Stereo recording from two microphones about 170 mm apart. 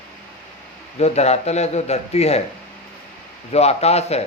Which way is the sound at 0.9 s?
40° left (ahead or behind).